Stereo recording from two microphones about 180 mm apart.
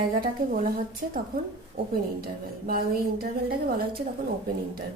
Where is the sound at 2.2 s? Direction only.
55° right (ahead or behind).